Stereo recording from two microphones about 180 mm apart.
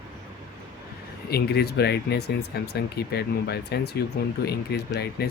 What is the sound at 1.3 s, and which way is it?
Speech, 60° left (ahead or behind).